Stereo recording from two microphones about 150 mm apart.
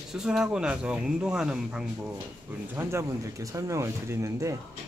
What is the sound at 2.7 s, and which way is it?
Speech, 15° right (ahead or behind).